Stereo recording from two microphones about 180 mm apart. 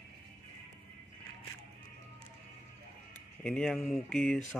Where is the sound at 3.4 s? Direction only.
5° left (ahead or behind).